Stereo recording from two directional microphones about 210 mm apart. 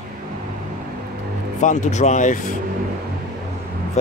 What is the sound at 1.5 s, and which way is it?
Speech, 35° left (ahead or behind).